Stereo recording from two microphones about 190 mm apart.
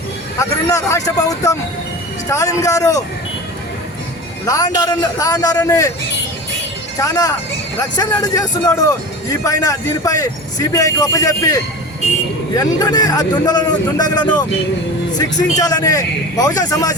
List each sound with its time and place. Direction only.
0.3 s speech: 15° left (ahead or behind)
4.4 s a man's voice: 20° left (ahead or behind)
7.0 s a man's voice: 20° left (ahead or behind)